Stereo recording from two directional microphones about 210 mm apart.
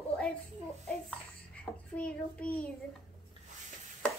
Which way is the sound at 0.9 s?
5° left (ahead or behind).